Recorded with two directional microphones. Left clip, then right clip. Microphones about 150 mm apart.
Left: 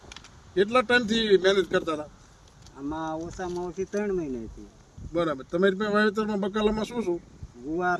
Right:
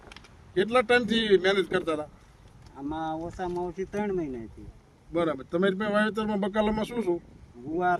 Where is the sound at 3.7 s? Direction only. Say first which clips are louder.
Left 2 dB; 35° right (ahead or behind).